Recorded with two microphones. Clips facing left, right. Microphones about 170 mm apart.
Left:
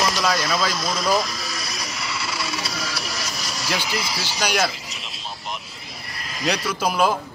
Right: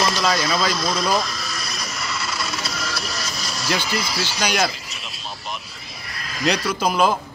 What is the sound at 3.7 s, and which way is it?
A man's voice, 10° left (ahead or behind).